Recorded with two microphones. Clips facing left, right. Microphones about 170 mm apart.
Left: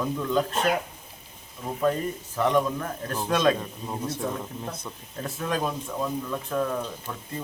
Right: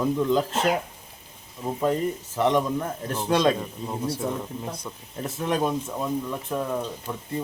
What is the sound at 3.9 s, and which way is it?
Speech, 5° right (ahead or behind).